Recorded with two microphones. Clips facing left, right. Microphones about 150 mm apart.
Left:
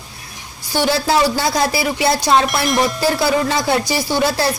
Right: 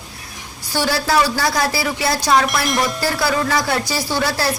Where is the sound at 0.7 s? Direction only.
20° left (ahead or behind).